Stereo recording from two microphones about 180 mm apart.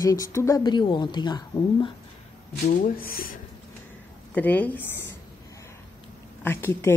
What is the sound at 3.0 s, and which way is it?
Speech, 55° left (ahead or behind).